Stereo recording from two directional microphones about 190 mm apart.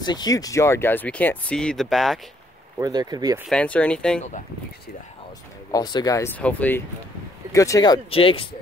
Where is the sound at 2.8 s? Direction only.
20° right (ahead or behind).